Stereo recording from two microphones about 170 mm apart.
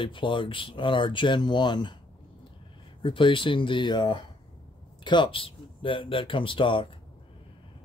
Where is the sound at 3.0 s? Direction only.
30° left (ahead or behind).